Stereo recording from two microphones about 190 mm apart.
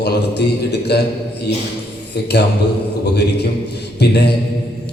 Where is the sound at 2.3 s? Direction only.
60° left (ahead or behind).